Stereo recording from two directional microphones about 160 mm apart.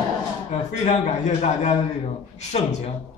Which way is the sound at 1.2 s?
45° left (ahead or behind).